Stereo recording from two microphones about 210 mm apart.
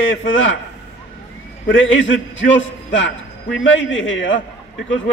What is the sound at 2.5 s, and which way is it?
A man's voice, 65° left (ahead or behind).